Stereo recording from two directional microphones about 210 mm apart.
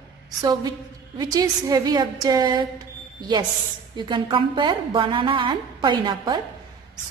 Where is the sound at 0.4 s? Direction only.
20° right (ahead or behind).